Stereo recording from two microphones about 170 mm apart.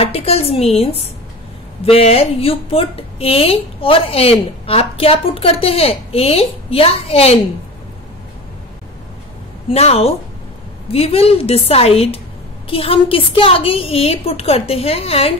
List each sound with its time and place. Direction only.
0.0 s speech: 35° left (ahead or behind)
1.9 s speech: 35° left (ahead or behind)
9.7 s speech: 35° left (ahead or behind)